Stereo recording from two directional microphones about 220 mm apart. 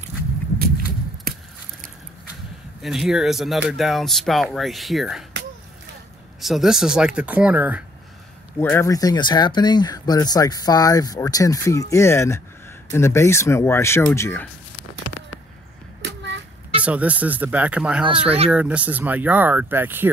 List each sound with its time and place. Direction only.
0.6 s walk: 40° right (ahead or behind)
2.8 s speech: centre (ahead or behind)
6.4 s speech: centre (ahead or behind)
8.5 s speech: 10° left (ahead or behind)
16.8 s speech: 5° right (ahead or behind)